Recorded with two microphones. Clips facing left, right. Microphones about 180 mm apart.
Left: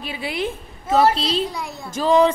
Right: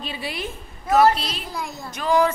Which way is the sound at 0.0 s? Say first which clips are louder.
Left 2 dB; 15° left (ahead or behind).